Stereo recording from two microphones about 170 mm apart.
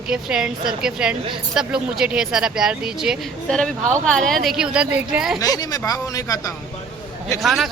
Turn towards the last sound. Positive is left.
turn(degrees=0)  # may be behind; listen again after turning